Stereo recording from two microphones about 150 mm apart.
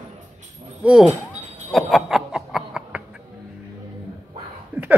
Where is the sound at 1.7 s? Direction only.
Centre (ahead or behind).